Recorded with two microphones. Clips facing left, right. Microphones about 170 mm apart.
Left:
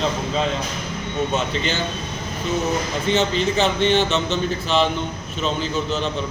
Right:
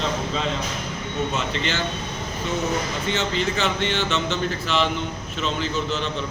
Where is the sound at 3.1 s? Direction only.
20° left (ahead or behind).